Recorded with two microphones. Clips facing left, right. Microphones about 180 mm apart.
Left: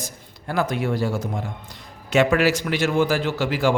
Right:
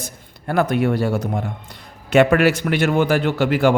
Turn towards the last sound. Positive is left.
turn(degrees=-60)  # may be behind; listen again after turning